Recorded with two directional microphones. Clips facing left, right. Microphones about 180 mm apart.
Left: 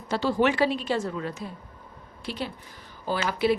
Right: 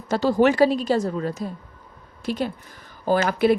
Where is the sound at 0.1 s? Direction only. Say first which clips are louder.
Right 5 dB; 40° right (ahead or behind).